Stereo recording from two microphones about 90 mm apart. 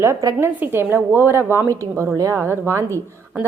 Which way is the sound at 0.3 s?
25° right (ahead or behind).